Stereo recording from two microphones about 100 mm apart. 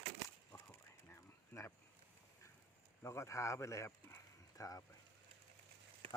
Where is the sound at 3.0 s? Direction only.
30° left (ahead or behind).